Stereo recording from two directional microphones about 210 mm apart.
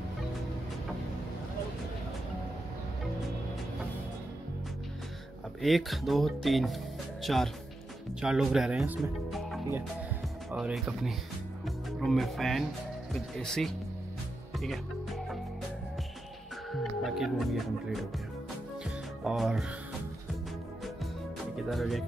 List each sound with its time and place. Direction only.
5.6 s speech: centre (ahead or behind)
14.6 s music: centre (ahead or behind)
17.0 s speech: centre (ahead or behind)
19.2 s speech: centre (ahead or behind)
21.6 s speech: centre (ahead or behind)